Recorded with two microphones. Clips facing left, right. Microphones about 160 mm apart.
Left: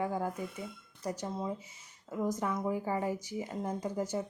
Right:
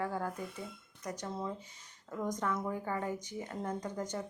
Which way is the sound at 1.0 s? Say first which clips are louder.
Left 4 dB; 30° left (ahead or behind).